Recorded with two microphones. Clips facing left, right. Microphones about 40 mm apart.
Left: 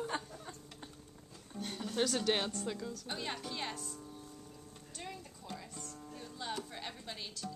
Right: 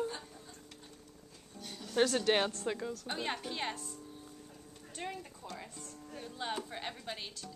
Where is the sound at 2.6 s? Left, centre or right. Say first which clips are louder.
Right 3 dB; right.